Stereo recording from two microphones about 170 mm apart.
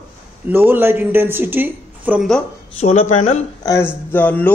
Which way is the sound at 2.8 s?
40° left (ahead or behind).